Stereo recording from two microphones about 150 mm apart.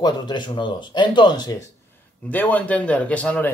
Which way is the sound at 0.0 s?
30° left (ahead or behind).